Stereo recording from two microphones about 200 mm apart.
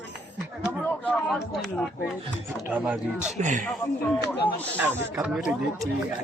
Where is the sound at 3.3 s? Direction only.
35° right (ahead or behind).